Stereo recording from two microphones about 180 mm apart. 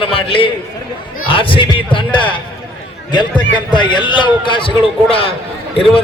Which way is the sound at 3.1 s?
25° left (ahead or behind).